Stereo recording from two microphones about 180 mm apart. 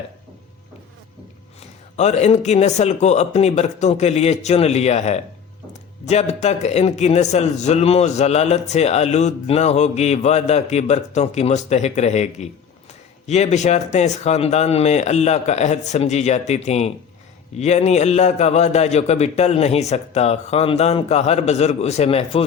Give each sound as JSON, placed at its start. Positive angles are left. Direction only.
{"t": 2.0, "sound": "a man's voice", "side_deg": 40}